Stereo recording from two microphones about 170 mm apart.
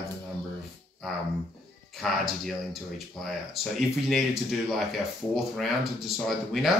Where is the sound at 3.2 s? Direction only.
Centre (ahead or behind).